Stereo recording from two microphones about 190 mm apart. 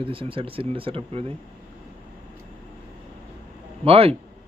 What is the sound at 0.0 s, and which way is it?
A man's voice, 30° right (ahead or behind).